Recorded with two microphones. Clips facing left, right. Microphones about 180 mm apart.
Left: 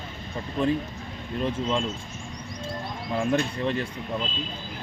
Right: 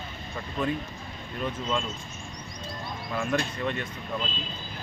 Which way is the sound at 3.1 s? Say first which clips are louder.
Left 4 dB; 30° left (ahead or behind).